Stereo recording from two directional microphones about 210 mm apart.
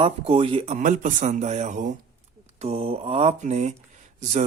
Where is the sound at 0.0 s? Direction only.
25° right (ahead or behind).